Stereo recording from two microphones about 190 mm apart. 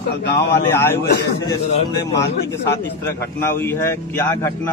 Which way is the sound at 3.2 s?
15° left (ahead or behind).